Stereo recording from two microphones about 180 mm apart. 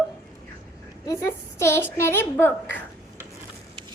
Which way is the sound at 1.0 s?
15° left (ahead or behind).